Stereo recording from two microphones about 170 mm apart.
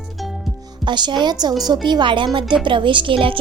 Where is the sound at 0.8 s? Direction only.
25° right (ahead or behind).